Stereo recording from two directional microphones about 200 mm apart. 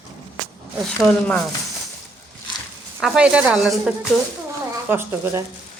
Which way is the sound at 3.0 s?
5° right (ahead or behind).